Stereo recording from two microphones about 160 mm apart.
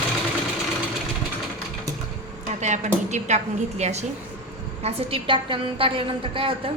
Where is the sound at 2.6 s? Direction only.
45° right (ahead or behind).